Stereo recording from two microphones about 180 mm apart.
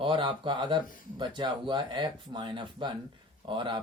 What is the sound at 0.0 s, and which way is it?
Speech, 25° right (ahead or behind).